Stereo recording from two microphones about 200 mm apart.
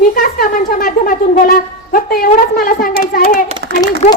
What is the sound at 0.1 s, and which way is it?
Wind instrument, 45° left (ahead or behind).